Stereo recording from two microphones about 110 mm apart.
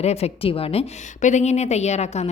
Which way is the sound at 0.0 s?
70° left (ahead or behind).